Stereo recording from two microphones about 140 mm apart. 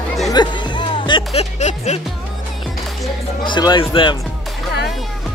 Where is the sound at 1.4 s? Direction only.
55° left (ahead or behind).